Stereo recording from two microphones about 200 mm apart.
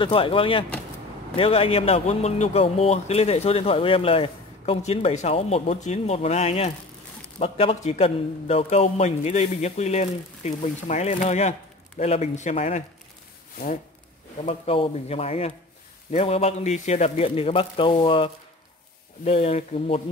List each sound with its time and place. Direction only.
0.0 s a man's voice: 25° left (ahead or behind)
14.4 s a man's voice: 30° left (ahead or behind)